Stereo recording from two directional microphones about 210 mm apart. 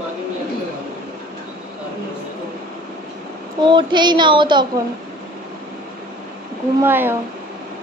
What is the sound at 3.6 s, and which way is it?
Child singing, 20° right (ahead or behind).